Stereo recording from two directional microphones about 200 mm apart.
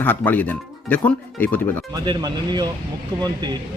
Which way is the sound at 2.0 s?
20° right (ahead or behind).